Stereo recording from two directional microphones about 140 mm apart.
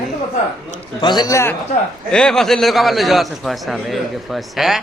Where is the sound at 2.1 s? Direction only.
5° left (ahead or behind).